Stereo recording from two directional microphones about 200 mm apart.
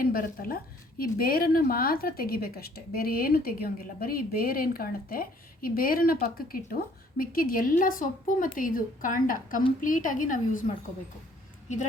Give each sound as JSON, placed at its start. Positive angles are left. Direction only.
{"t": 0.0, "sound": "a woman's voice", "side_deg": 45}